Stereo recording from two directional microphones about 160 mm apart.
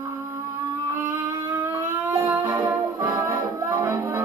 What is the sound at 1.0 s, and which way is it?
Music, 10° right (ahead or behind).